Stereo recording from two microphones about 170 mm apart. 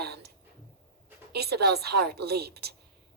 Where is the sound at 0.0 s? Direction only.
70° right (ahead or behind).